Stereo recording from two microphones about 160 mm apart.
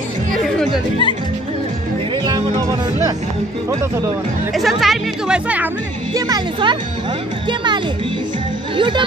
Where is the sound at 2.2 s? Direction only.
25° right (ahead or behind).